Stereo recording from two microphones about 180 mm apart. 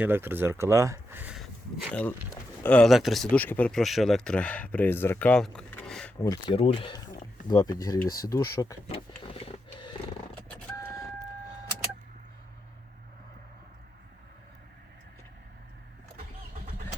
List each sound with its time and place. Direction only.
0.0 s speech: 10° right (ahead or behind)
1.9 s speech: 10° left (ahead or behind)
6.2 s speech: 25° left (ahead or behind)
8.0 s speech: 55° left (ahead or behind)
8.3 s speech: 20° left (ahead or behind)
8.9 s vehicle: 30° left (ahead or behind)